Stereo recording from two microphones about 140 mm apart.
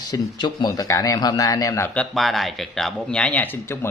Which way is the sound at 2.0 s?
Centre (ahead or behind).